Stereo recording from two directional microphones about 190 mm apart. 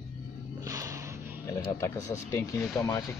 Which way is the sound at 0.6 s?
15° right (ahead or behind).